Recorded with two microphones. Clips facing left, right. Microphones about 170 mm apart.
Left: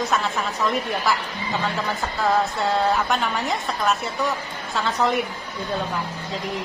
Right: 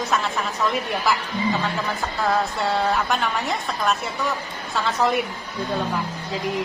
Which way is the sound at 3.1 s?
Centre (ahead or behind).